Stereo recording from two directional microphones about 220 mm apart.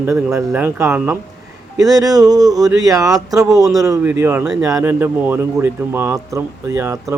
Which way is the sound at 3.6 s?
Centre (ahead or behind).